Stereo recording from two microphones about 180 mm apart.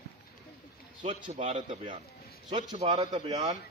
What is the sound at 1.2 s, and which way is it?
A man's voice, 30° right (ahead or behind).